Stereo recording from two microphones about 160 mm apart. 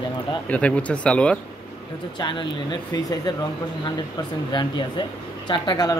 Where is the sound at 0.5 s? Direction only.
10° left (ahead or behind).